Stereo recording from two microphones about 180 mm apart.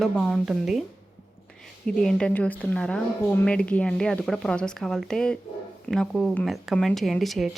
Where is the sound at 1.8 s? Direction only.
5° left (ahead or behind).